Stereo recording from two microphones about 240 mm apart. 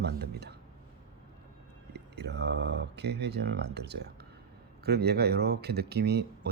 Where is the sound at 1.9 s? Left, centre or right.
Right.